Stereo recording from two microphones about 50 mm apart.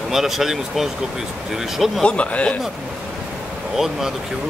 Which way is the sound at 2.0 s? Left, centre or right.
Left.